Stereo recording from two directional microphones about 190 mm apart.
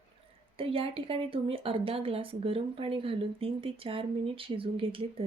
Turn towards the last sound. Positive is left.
turn(degrees=-30)  # may be behind; listen again after turning